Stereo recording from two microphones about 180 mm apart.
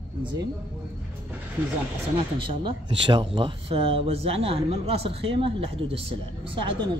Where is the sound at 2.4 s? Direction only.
25° right (ahead or behind).